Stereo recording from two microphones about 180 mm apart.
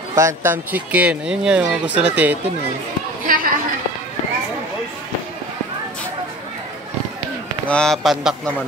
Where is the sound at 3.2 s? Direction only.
50° right (ahead or behind).